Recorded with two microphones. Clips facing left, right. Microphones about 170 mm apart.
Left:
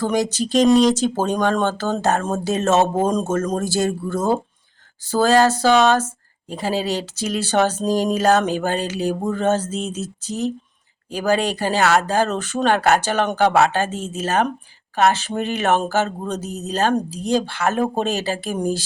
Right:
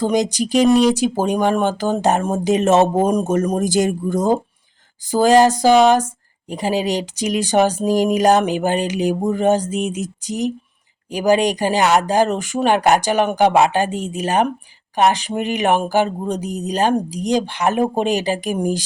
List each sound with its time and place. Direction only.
0.0 s speech: 15° right (ahead or behind)